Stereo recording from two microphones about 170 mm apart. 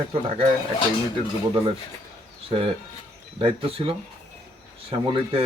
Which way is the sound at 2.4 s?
35° right (ahead or behind).